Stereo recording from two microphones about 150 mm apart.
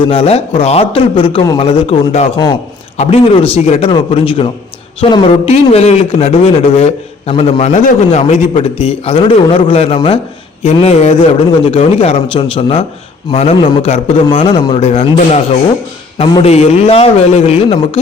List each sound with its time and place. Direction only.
0.0 s a man's voice: 40° left (ahead or behind)
16.4 s a man's voice: 45° left (ahead or behind)